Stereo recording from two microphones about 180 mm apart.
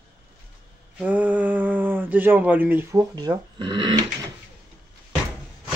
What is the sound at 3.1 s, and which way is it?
Speech, 20° right (ahead or behind).